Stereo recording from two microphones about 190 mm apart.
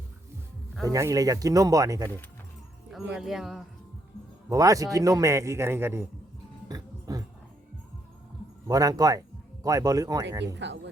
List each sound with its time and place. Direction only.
0.8 s a man's voice: 15° right (ahead or behind)
2.9 s speech: centre (ahead or behind)
4.4 s a man's voice: 20° right (ahead or behind)
6.7 s a sound: 20° right (ahead or behind)
8.6 s speech: 20° right (ahead or behind)
10.4 s speech: 65° right (ahead or behind)